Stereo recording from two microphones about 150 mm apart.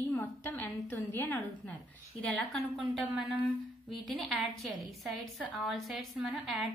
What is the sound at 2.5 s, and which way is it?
A woman's voice, centre (ahead or behind).